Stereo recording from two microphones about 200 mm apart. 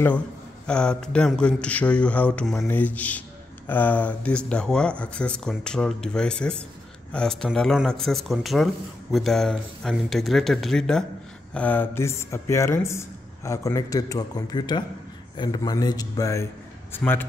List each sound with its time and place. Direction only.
0.7 s a man's voice: 5° left (ahead or behind)